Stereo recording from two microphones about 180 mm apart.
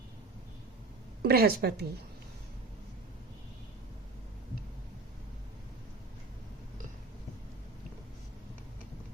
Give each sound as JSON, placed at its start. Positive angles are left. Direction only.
{"t": 1.2, "sound": "a woman's voice", "side_deg": -60}